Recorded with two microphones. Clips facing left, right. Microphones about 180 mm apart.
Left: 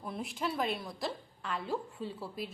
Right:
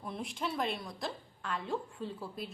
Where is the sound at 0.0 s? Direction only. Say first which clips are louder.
Left 1 dB; centre (ahead or behind).